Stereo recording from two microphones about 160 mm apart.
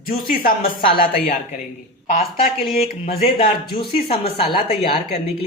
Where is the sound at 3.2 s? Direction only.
35° left (ahead or behind).